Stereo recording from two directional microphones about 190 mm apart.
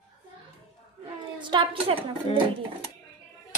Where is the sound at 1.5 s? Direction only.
30° right (ahead or behind).